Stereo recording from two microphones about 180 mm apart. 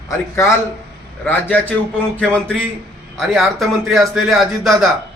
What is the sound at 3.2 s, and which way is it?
A man's voice, centre (ahead or behind).